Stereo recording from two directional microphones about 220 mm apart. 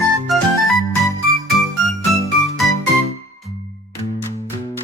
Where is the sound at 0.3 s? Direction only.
Centre (ahead or behind).